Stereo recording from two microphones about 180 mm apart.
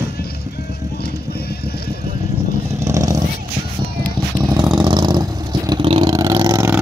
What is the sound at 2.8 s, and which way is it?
Vehicle, 20° right (ahead or behind).